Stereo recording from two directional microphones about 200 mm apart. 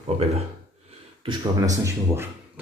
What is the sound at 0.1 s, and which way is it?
Speech, 30° right (ahead or behind).